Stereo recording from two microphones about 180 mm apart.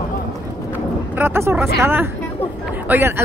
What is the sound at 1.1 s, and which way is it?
Speech, 15° right (ahead or behind).